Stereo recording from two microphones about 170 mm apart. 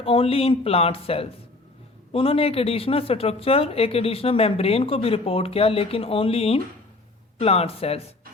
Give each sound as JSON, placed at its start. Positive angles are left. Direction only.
{"t": 0.0, "sound": "speech", "side_deg": 35}